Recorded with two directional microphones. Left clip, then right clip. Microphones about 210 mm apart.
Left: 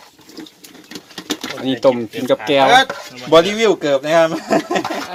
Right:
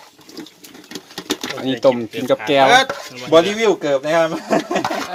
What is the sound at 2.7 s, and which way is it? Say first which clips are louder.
Dishes: left 1 dB; 50° right (ahead or behind).